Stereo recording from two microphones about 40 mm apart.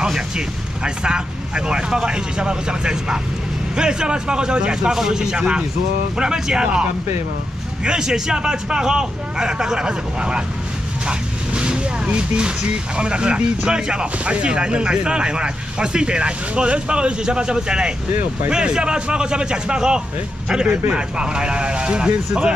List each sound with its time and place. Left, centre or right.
0.8 s speech: right